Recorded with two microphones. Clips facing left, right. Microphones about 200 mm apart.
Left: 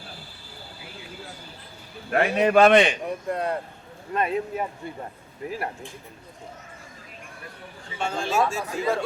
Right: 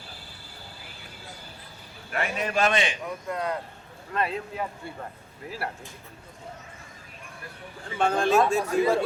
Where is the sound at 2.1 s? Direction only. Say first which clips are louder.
Left 9 dB; 60° left (ahead or behind).